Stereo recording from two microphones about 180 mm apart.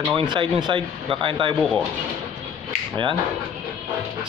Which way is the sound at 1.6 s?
Centre (ahead or behind).